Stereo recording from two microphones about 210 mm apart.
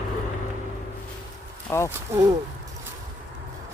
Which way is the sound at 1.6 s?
10° left (ahead or behind).